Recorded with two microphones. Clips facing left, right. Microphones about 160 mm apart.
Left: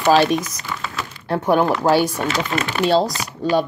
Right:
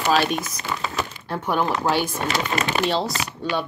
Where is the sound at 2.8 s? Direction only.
40° left (ahead or behind).